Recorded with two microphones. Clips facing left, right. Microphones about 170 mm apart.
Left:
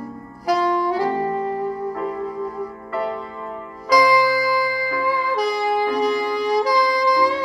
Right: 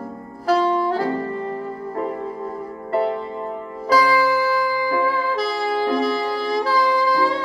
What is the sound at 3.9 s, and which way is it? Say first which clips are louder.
Music: left 1 dB; 10° left (ahead or behind).